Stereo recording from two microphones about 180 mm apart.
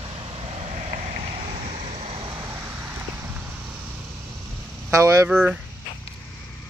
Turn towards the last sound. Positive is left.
turn(degrees=-5)  # may be behind; listen again after turning